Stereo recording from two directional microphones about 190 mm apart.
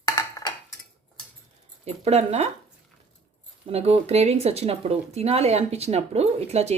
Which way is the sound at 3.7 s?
30° right (ahead or behind).